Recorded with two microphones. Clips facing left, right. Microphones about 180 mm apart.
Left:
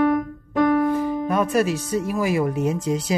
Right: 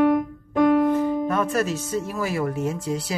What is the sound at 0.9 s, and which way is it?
Speech, 10° left (ahead or behind).